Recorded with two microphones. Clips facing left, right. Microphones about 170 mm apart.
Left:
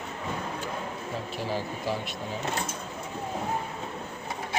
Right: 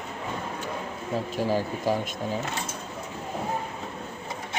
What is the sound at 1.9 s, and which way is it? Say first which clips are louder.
Speech: right 5 dB; 45° right (ahead or behind).